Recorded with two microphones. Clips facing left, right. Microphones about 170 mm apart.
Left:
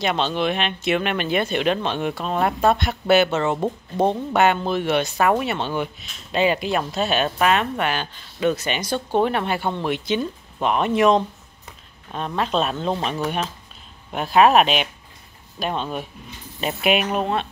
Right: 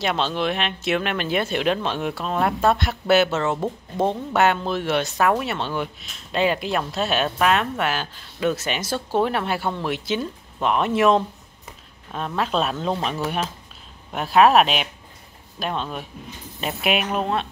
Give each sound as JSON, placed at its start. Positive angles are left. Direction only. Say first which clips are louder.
{"t": 0.0, "sound": "speech", "louder": "left 1 dB", "side_deg": 0}